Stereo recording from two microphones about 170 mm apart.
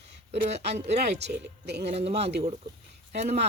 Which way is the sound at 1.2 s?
80° right.